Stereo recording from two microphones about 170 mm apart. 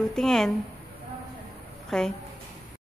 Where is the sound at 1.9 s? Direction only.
5° left (ahead or behind).